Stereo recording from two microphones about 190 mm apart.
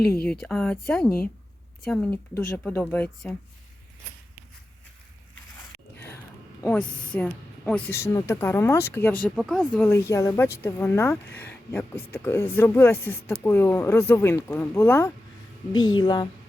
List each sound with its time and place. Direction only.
0.3 s speech: 5° left (ahead or behind)
6.6 s speech: 5° left (ahead or behind)
9.2 s speech: centre (ahead or behind)
9.7 s speech: 10° left (ahead or behind)